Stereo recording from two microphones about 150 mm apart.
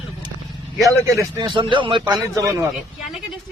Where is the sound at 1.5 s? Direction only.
30° right (ahead or behind).